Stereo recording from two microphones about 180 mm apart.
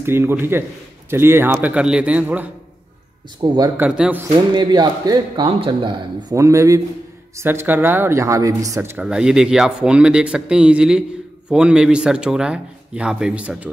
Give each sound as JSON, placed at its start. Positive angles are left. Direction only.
{"t": 0.0, "sound": "a man's voice", "side_deg": -15}
{"t": 3.3, "sound": "speech", "side_deg": -25}
{"t": 3.8, "sound": "a man's voice", "side_deg": -5}
{"t": 4.6, "sound": "speech", "side_deg": -25}